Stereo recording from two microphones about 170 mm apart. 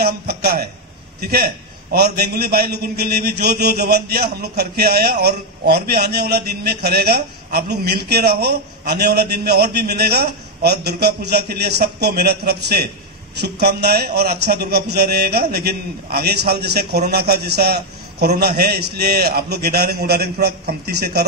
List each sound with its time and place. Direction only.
0.0 s a man's voice: 70° right (ahead or behind)